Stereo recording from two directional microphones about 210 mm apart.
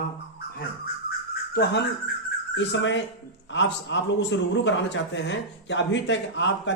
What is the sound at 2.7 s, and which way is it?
A man's voice, 60° left (ahead or behind).